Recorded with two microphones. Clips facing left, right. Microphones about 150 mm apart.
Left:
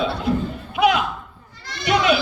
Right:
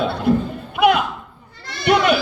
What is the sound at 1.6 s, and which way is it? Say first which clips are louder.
Bleat: right 3 dB; 55° right (ahead or behind).